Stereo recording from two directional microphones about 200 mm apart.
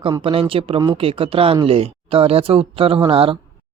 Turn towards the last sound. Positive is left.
turn(degrees=-25)  # may be behind; listen again after turning